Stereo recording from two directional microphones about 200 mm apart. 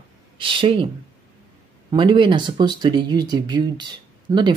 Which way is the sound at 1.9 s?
25° right (ahead or behind).